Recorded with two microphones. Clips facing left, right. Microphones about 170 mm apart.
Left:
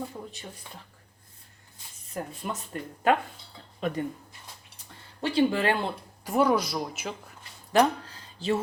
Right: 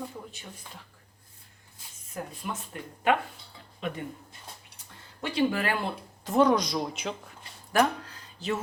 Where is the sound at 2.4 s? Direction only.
40° left (ahead or behind).